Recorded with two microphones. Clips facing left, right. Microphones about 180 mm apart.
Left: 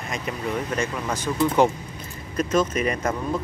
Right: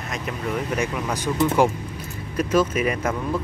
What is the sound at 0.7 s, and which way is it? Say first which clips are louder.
Speech: right 1 dB; 15° right (ahead or behind).